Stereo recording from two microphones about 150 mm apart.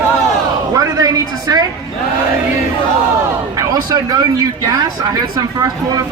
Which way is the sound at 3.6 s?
25° right (ahead or behind).